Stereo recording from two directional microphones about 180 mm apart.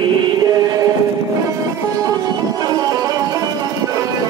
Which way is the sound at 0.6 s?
20° right (ahead or behind).